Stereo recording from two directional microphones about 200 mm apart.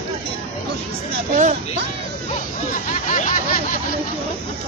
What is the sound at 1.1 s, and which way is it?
Hubbub, 40° right (ahead or behind).